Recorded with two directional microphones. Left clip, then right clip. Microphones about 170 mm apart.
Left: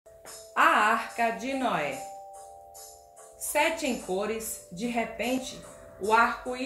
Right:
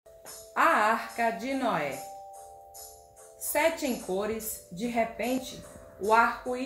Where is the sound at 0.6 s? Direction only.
10° right (ahead or behind).